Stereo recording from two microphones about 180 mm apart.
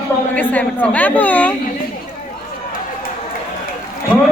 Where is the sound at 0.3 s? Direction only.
10° left (ahead or behind).